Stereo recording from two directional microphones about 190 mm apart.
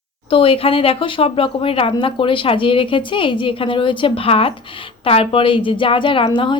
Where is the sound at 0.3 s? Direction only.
30° left (ahead or behind).